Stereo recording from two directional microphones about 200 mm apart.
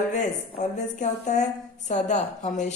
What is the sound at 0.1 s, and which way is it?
Speech, 35° left (ahead or behind).